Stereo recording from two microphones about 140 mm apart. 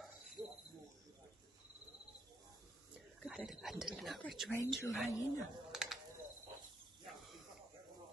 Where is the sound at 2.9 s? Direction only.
Centre (ahead or behind).